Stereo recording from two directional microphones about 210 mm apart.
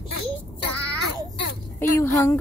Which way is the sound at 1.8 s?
10° left (ahead or behind).